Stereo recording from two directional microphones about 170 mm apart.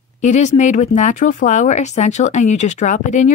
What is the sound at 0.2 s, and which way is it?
Speech, 45° left (ahead or behind).